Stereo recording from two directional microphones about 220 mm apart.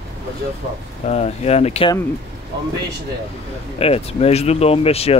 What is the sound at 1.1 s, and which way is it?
Speech, 30° left (ahead or behind).